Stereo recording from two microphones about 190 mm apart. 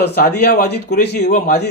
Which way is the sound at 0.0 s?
55° left (ahead or behind).